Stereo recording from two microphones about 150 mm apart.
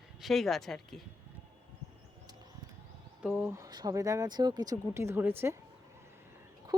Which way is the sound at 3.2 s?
10° right (ahead or behind).